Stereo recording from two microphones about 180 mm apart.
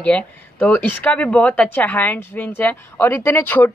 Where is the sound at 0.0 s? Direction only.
10° left (ahead or behind).